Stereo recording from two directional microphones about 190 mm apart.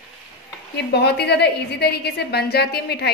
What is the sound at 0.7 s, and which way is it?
A woman's voice, 60° left (ahead or behind).